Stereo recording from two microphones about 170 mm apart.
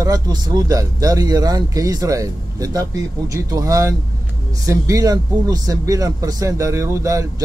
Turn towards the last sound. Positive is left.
turn(degrees=-20)  # may be behind; listen again after turning